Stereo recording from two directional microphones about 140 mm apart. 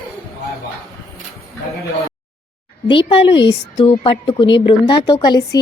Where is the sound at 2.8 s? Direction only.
40° left (ahead or behind).